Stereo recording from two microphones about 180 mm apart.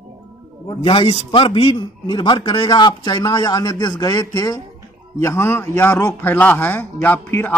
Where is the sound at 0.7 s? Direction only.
30° left (ahead or behind).